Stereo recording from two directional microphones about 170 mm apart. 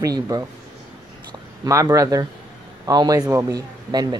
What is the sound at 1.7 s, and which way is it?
Speech, 20° right (ahead or behind).